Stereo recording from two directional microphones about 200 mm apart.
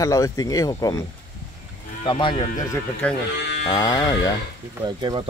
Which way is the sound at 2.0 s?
25° left (ahead or behind).